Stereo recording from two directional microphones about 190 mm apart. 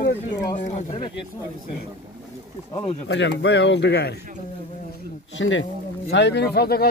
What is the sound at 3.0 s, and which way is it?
Speech, 70° left (ahead or behind).